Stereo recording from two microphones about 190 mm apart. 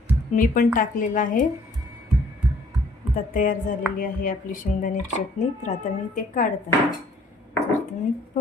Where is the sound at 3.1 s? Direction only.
45° left (ahead or behind).